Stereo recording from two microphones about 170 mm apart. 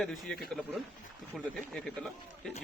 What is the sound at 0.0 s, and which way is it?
A man's voice, centre (ahead or behind).